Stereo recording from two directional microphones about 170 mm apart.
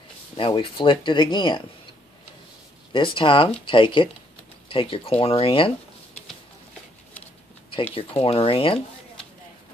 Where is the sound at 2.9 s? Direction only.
30° left (ahead or behind).